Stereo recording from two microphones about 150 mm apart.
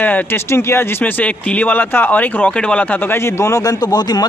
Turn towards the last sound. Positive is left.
turn(degrees=30)  # may be behind; listen again after turning